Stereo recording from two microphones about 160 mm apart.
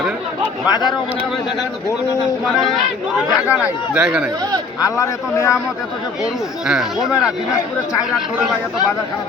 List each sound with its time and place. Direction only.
0.7 s a man's voice: 25° left (ahead or behind)
3.4 s speech: 5° right (ahead or behind)
4.8 s a man's voice: 20° left (ahead or behind)
6.7 s speech: 5° right (ahead or behind)